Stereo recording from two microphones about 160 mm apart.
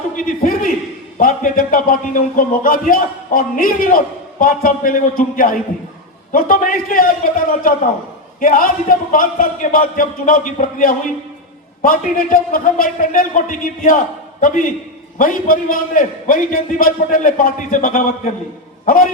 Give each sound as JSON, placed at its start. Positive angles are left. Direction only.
{"t": 0.2, "sound": "a man's voice", "side_deg": 60}